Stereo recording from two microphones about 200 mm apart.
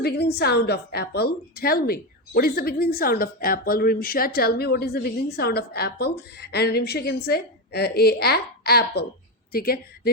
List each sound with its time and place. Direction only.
0.0 s a woman's voice: 55° left (ahead or behind)